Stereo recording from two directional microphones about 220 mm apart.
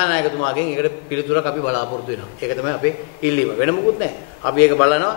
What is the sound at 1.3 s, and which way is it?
Speech, 25° left (ahead or behind).